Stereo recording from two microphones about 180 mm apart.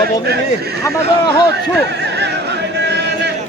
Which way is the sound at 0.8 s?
20° left (ahead or behind).